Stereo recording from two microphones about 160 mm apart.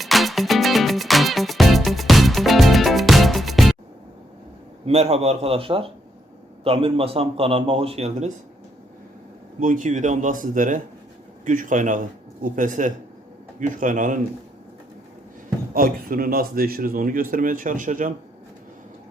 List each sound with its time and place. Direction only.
0.0 s music: centre (ahead or behind)
4.9 s a man's voice: 40° right (ahead or behind)
9.6 s a man's voice: 55° right (ahead or behind)
15.7 s speech: 60° right (ahead or behind)